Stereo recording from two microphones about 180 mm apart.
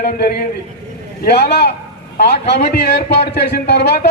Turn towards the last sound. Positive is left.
turn(degrees=70)  # may be behind; listen again after turning